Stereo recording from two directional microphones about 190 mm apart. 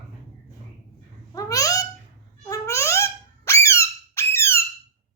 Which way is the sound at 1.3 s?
20° left (ahead or behind).